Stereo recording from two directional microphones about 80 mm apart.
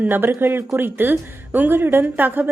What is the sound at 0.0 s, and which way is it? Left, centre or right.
A woman's voice, right.